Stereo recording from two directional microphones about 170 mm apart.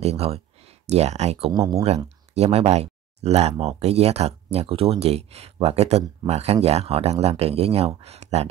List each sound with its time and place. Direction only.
0.0 s speech: 35° right (ahead or behind)